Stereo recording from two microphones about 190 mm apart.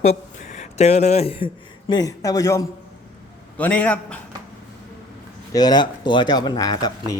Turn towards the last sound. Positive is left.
turn(degrees=20)  # may be behind; listen again after turning